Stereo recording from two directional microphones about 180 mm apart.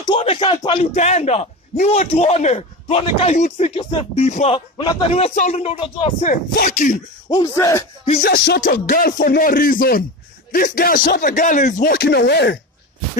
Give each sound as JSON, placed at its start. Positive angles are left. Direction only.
{"t": 0.0, "sound": "a man's voice", "side_deg": 30}
{"t": 6.2, "sound": "speech", "side_deg": 50}
{"t": 7.5, "sound": "rapping", "side_deg": 15}
{"t": 8.2, "sound": "music", "side_deg": 60}
{"t": 8.8, "sound": "speech", "side_deg": 50}